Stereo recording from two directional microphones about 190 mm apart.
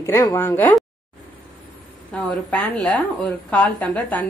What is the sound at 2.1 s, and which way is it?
A woman's voice, 5° left (ahead or behind).